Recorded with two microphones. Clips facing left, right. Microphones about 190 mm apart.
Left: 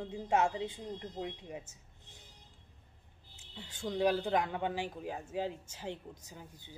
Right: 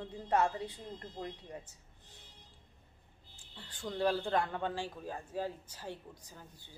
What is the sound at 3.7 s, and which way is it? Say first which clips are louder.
A man's voice: left 2 dB; 15° left (ahead or behind).